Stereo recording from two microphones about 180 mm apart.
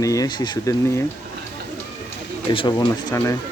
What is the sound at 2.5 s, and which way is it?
Speech, 25° left (ahead or behind).